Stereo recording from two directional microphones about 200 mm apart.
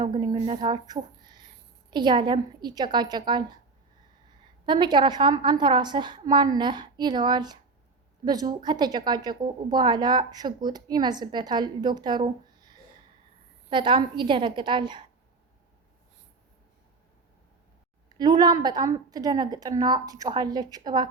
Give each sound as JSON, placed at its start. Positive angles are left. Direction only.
{"t": 0.0, "sound": "speech", "side_deg": -20}
{"t": 4.6, "sound": "speech", "side_deg": -25}
{"t": 18.2, "sound": "speech", "side_deg": -20}